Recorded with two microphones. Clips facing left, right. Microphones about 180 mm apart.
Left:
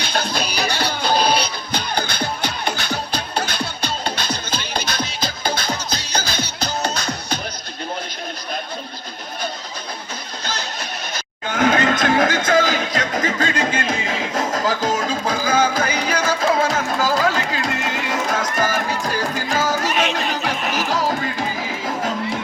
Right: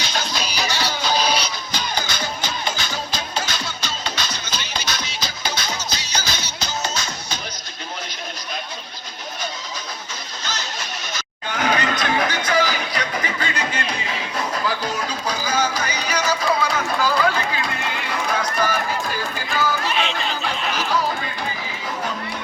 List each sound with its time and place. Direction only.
0.0 s music: 55° left (ahead or behind)
11.4 s music: 50° left (ahead or behind)